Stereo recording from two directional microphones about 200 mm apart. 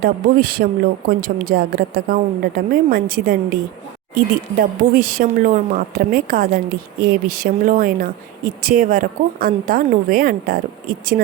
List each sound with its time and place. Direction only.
0.0 s speech: 45° right (ahead or behind)